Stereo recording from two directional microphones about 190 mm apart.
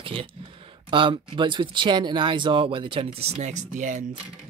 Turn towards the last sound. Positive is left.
turn(degrees=-40)  # may be behind; listen again after turning